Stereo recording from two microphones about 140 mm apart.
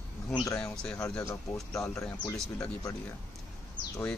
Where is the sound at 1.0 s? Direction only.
25° left (ahead or behind).